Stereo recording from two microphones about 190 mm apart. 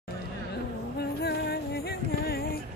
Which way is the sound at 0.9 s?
60° left (ahead or behind).